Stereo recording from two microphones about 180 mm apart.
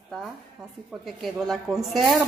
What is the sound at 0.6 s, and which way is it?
A woman's voice, centre (ahead or behind).